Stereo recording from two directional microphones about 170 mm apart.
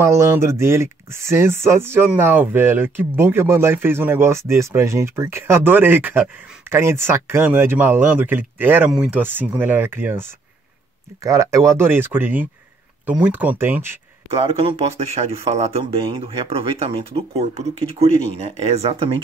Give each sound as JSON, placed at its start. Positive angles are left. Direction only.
{"t": 0.0, "sound": "speech", "side_deg": -15}
{"t": 14.4, "sound": "speech", "side_deg": -35}